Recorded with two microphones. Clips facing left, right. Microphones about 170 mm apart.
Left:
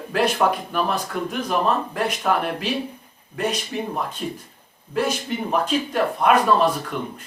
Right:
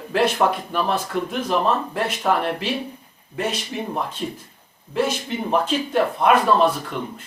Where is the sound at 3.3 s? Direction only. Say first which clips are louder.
Left 1 dB; 5° right (ahead or behind).